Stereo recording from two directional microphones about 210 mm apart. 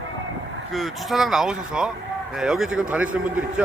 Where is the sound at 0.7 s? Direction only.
Centre (ahead or behind).